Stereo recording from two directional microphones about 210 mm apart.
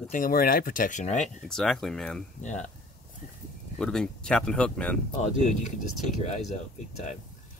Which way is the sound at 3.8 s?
5° left (ahead or behind).